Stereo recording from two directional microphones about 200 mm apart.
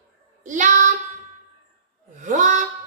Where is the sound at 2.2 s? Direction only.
35° right (ahead or behind).